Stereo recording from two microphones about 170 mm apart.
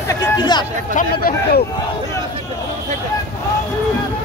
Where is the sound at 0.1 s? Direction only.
25° left (ahead or behind).